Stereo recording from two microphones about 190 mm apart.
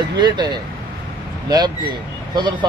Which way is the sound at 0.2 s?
25° right (ahead or behind).